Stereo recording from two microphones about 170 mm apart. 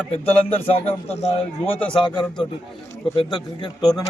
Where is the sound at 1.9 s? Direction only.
30° left (ahead or behind).